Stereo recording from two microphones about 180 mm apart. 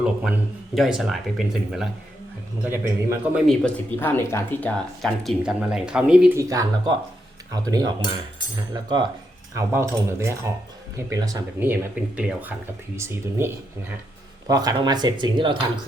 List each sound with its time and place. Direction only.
0.0 s speech: 5° right (ahead or behind)
2.6 s speech: 15° right (ahead or behind)
3.3 s speech: centre (ahead or behind)
6.3 s speech: 20° right (ahead or behind)